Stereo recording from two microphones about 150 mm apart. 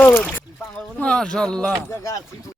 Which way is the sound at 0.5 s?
5° left (ahead or behind).